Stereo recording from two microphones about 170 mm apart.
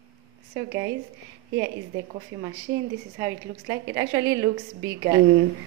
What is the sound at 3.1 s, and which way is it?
A woman's voice, 20° right (ahead or behind).